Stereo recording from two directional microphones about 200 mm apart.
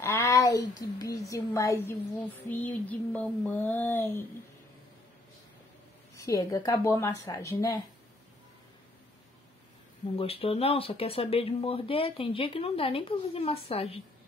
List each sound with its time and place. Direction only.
0.0 s a woman's voice: 15° left (ahead or behind)
6.1 s a woman's voice: 15° left (ahead or behind)
10.1 s speech: 30° left (ahead or behind)